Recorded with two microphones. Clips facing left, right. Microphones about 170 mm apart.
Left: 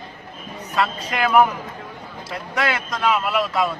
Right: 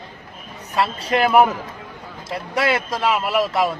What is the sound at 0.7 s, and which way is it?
Speech, 30° right (ahead or behind).